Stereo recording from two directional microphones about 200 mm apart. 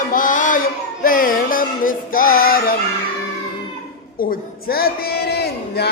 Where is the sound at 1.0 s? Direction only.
45° left (ahead or behind).